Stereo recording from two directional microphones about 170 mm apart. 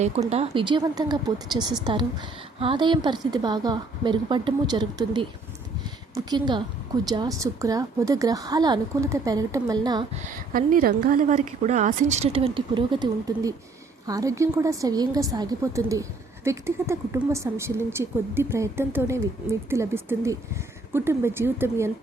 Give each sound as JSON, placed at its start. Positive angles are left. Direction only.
{"t": 0.3, "sound": "a woman's voice", "side_deg": -35}
{"t": 10.2, "sound": "a woman's voice", "side_deg": -50}